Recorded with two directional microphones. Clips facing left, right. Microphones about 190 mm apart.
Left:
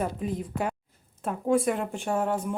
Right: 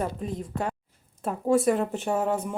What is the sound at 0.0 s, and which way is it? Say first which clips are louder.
Speech: left 1 dB; 5° left (ahead or behind).